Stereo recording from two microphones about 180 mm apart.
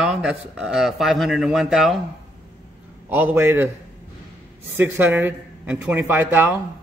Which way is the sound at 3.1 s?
10° right (ahead or behind).